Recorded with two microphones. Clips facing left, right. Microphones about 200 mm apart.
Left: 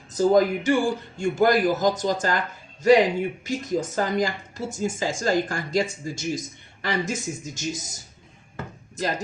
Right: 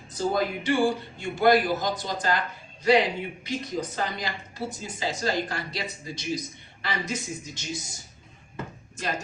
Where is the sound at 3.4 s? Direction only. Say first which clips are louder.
Left 4 dB; 45° left (ahead or behind).